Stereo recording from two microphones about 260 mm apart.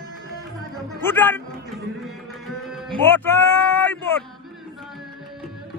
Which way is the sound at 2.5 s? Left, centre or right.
Centre.